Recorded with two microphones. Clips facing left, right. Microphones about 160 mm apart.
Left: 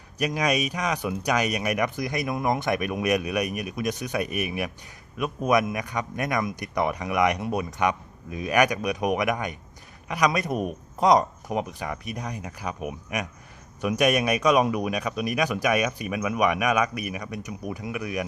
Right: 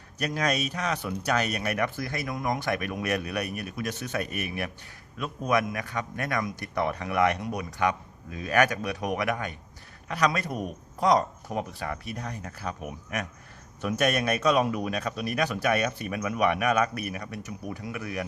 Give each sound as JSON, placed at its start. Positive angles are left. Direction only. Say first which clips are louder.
{"t": 0.2, "sound": "speech", "louder": "left 3 dB", "side_deg": 10}